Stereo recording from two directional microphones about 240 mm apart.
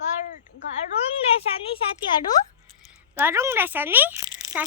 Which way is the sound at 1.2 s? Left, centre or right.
Left.